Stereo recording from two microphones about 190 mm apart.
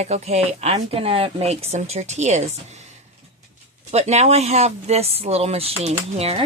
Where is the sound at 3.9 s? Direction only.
35° right (ahead or behind).